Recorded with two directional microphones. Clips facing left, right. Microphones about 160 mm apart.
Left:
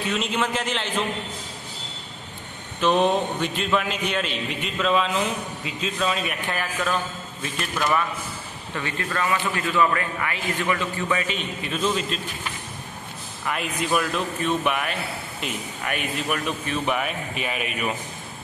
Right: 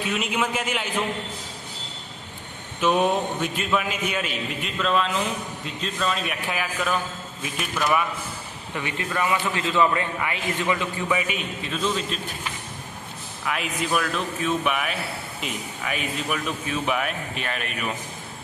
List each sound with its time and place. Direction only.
0.0 s a man's voice: 10° right (ahead or behind)
2.8 s a man's voice: 5° right (ahead or behind)
8.7 s a man's voice: 20° right (ahead or behind)
11.6 s a man's voice: 5° left (ahead or behind)
13.5 s a man's voice: centre (ahead or behind)